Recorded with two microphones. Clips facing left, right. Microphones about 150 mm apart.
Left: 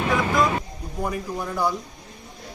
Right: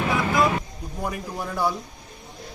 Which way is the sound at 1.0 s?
5° right (ahead or behind).